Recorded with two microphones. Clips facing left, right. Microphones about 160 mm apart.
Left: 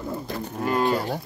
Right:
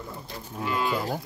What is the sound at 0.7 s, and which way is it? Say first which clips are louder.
Speech: left 5 dB; 45° left (ahead or behind).